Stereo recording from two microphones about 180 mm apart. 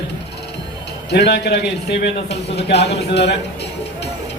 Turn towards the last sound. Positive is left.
turn(degrees=70)  # may be behind; listen again after turning